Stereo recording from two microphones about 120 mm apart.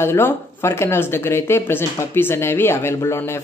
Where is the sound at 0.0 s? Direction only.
20° left (ahead or behind).